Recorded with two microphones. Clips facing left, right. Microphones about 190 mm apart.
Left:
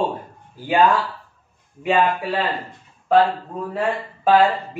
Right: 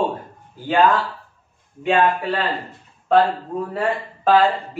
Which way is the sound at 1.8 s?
10° left (ahead or behind).